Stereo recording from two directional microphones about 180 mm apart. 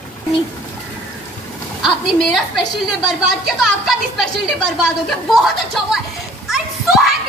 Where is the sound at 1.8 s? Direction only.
Centre (ahead or behind).